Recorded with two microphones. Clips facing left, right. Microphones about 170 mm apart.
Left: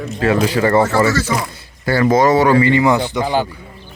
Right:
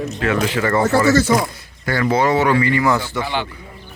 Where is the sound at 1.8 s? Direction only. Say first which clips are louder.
Left 4 dB; 35° left (ahead or behind).